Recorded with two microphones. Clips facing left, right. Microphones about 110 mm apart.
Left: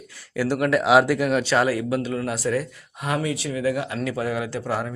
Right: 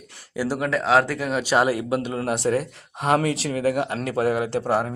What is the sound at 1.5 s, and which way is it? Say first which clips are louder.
Speech: right 1 dB; 15° right (ahead or behind).